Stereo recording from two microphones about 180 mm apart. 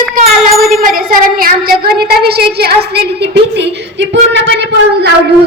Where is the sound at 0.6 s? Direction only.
55° right (ahead or behind); by 5.1 s 70° right (ahead or behind).